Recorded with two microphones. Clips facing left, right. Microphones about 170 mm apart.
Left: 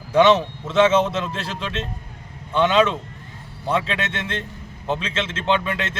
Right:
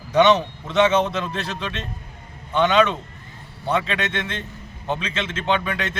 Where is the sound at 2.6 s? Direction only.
30° left (ahead or behind).